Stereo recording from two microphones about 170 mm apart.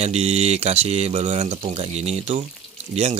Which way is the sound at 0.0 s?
40° right (ahead or behind).